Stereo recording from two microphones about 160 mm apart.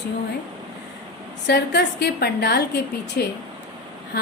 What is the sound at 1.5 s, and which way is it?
A woman's voice, 90° left.